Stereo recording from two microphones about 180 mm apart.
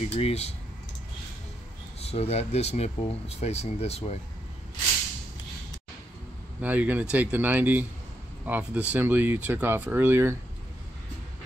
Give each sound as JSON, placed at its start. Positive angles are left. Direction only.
{"t": 0.1, "sound": "speech", "side_deg": 35}
{"t": 2.0, "sound": "speech", "side_deg": 35}
{"t": 6.6, "sound": "speech", "side_deg": -10}